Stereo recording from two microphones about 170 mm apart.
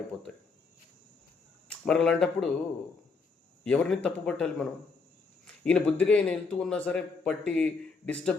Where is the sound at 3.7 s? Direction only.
5° left (ahead or behind).